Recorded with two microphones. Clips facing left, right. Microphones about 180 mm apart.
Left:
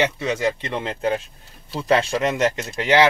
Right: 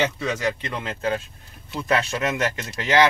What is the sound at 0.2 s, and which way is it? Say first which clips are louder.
Speech: left 3 dB; 30° left (ahead or behind).